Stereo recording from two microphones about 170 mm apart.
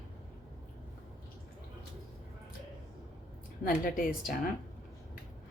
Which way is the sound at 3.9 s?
55° left (ahead or behind).